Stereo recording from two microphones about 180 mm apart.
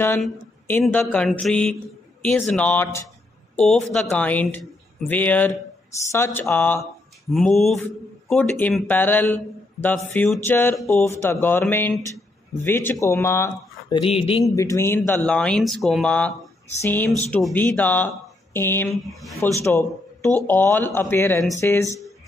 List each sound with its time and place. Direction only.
0.2 s a man's voice: 10° left (ahead or behind)
3.5 s a man's voice: centre (ahead or behind); by 14.4 s 30° left (ahead or behind)
14.5 s a man's voice: 15° left (ahead or behind)